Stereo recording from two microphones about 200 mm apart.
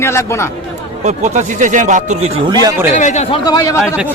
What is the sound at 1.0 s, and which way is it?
Speech, 35° right (ahead or behind).